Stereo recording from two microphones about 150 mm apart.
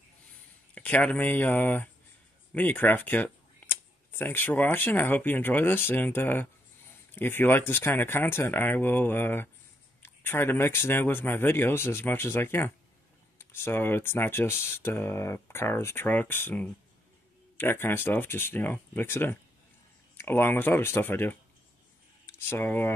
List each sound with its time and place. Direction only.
0.7 s speech: 10° left (ahead or behind)